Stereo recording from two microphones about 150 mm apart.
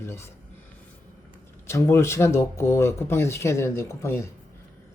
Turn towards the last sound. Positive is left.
turn(degrees=15)  # may be behind; listen again after turning